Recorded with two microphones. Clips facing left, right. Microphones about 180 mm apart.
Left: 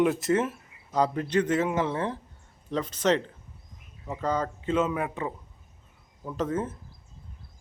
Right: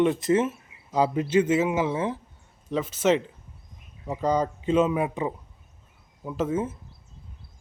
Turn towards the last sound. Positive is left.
turn(degrees=-10)  # may be behind; listen again after turning